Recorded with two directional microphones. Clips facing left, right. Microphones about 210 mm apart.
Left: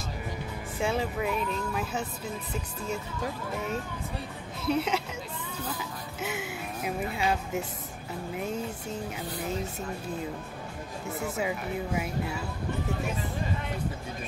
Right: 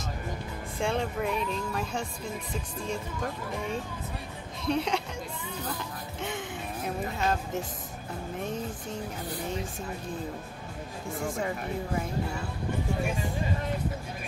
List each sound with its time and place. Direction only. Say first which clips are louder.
0.7 s speech: even; 5° left (ahead or behind)
3.5 s speech: left 1 dB; 5° left (ahead or behind)
5.8 s music: even; 5° left (ahead or behind)
7.2 s speech: even; 10° left (ahead or behind)
11.1 s speech: left 1 dB; 5° left (ahead or behind)